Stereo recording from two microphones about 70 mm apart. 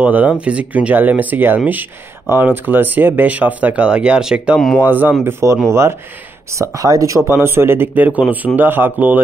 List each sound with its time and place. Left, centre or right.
0.0 s speech: right
4.6 s speech: centre
4.8 s speech: right
5.2 s speech: right
7.2 s speech: right